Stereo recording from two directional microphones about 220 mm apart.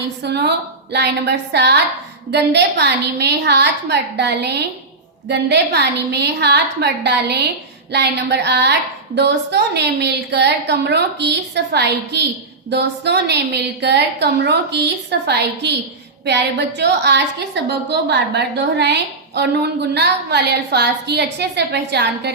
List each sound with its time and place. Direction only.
0.2 s a woman's voice: 50° right (ahead or behind)